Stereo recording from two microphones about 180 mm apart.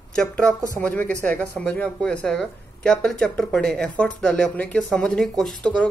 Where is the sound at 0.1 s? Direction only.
5° left (ahead or behind).